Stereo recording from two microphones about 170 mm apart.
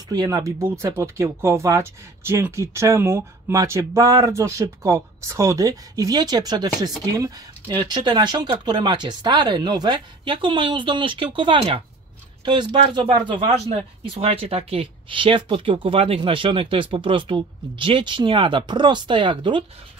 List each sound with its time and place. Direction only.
0.1 s speech: 20° right (ahead or behind)